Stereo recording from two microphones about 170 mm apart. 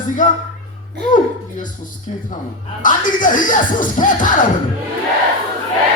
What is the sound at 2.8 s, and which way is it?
Speech, 50° left (ahead or behind).